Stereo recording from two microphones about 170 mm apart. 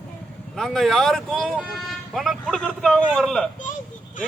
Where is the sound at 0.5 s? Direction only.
Centre (ahead or behind).